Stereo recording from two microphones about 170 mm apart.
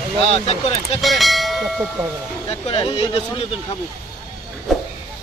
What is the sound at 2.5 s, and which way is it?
Speech, 30° left (ahead or behind).